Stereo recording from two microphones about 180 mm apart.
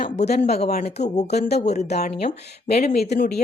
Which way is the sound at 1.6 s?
40° left (ahead or behind).